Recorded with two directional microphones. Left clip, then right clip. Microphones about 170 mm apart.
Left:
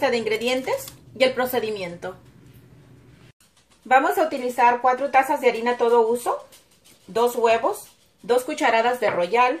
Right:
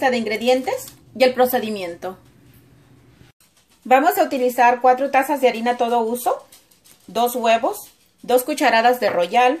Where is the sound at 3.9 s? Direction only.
65° right (ahead or behind).